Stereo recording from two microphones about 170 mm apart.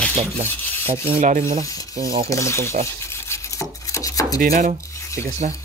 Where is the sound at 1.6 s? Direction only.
20° left (ahead or behind).